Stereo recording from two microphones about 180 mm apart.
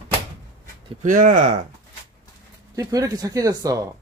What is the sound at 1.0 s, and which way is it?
Speech, 45° right (ahead or behind).